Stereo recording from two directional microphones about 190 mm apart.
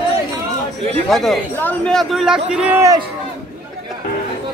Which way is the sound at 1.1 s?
Centre (ahead or behind).